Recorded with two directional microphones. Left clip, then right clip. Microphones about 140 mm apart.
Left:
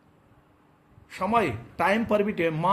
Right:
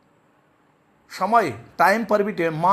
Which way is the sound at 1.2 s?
30° right (ahead or behind).